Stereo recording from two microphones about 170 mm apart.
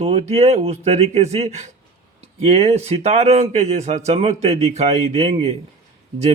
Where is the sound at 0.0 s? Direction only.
35° right (ahead or behind).